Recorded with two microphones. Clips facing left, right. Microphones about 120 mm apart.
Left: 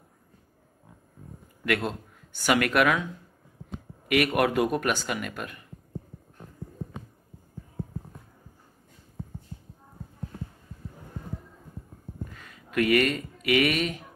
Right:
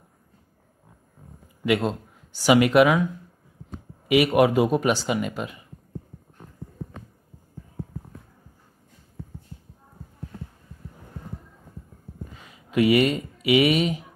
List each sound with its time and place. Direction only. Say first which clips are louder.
1.7 s speech: right 5 dB; 30° right (ahead or behind)
2.4 s a man's voice: right 6 dB; 15° right (ahead or behind)
4.1 s a man's voice: right 5 dB; 10° right (ahead or behind)
5.0 s speech: right 6 dB; 20° right (ahead or behind)
12.4 s speech: right 5 dB; 15° right (ahead or behind)